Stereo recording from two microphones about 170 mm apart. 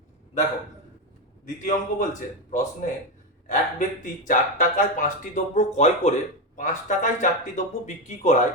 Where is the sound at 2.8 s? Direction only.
50° left (ahead or behind).